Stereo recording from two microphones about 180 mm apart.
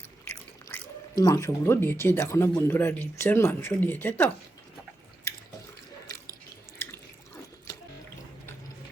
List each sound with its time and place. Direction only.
0.3 s speech: 15° left (ahead or behind)
5.3 s drip: 15° left (ahead or behind)